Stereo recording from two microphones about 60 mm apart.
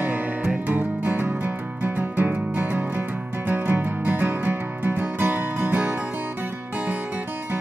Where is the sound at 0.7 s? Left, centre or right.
Right.